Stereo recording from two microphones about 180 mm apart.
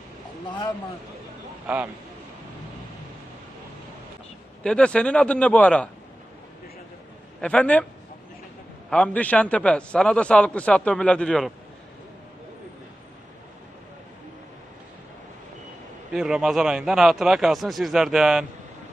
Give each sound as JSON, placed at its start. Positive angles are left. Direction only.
{"t": 0.5, "sound": "speech", "side_deg": 25}
{"t": 4.6, "sound": "a man's voice", "side_deg": 5}
{"t": 7.3, "sound": "a man's voice", "side_deg": 5}
{"t": 8.9, "sound": "a man's voice", "side_deg": 5}
{"t": 16.1, "sound": "a man's voice", "side_deg": -5}